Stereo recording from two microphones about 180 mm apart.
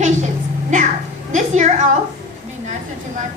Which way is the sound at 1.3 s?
40° right (ahead or behind).